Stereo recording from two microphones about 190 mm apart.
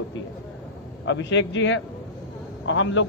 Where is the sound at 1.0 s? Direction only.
75° left (ahead or behind).